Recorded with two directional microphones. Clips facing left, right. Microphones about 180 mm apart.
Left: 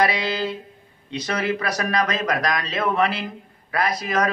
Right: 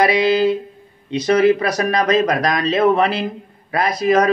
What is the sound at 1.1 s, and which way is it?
A man's voice, 20° right (ahead or behind).